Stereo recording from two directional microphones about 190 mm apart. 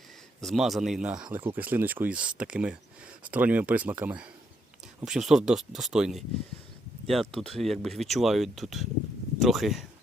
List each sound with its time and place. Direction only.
0.4 s speech: centre (ahead or behind)